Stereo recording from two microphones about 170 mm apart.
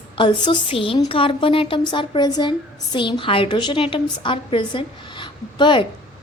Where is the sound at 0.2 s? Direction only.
30° left (ahead or behind).